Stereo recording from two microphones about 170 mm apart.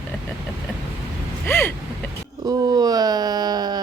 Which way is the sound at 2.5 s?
20° right (ahead or behind).